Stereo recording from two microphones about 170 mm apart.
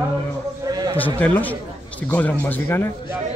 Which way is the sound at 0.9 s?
10° left (ahead or behind).